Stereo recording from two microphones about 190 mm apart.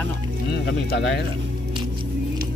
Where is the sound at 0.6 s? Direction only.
60° left (ahead or behind).